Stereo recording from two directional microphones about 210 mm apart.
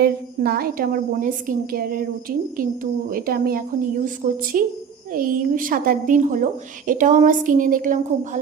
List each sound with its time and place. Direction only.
0.0 s a woman's voice: 45° right (ahead or behind)
3.1 s a woman's voice: 45° right (ahead or behind)